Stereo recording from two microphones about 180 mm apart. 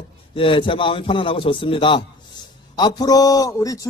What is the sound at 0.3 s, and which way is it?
A man's voice, 30° left (ahead or behind).